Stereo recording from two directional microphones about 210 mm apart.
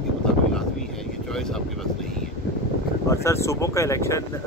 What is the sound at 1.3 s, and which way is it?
Speech, centre (ahead or behind).